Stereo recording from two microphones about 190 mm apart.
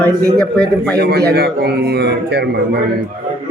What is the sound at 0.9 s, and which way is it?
Speech, 60° right (ahead or behind).